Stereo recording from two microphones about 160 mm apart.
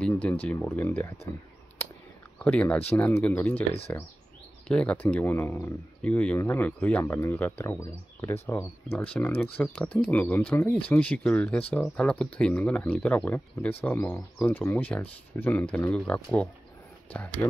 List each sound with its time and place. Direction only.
0.2 s speech: 10° left (ahead or behind)
1.8 s a sound: 15° left (ahead or behind)
2.3 s speech: 5° left (ahead or behind)